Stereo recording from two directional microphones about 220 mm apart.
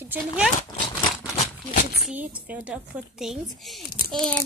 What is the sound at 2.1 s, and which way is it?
A woman's voice, 5° right (ahead or behind).